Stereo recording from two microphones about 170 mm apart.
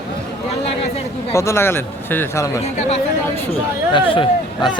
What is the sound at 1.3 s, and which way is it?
Speech, 15° left (ahead or behind).